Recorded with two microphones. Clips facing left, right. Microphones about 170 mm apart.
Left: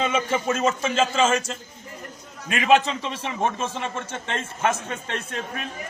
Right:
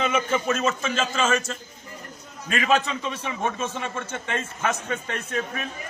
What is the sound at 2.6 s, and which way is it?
Speech, 30° left (ahead or behind).